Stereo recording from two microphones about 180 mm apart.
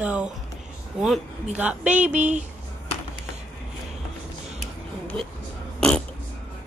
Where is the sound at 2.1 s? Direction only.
40° right (ahead or behind).